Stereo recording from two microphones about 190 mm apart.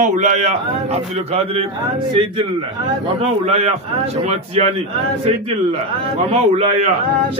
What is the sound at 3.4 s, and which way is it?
Speech, 30° right (ahead or behind).